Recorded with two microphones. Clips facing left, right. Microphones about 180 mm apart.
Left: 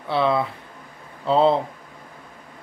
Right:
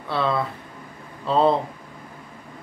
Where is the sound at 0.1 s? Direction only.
15° left (ahead or behind).